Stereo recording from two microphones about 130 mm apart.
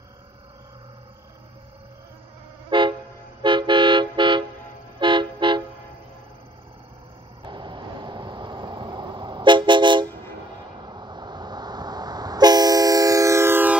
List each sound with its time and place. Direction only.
2.7 s train: 40° right (ahead or behind)
3.4 s toot: 40° right (ahead or behind)
5.0 s vehicle: 40° right (ahead or behind)
7.4 s vehicle: 35° right (ahead or behind)
10.9 s train: 35° right (ahead or behind); by 13.7 s 15° right (ahead or behind)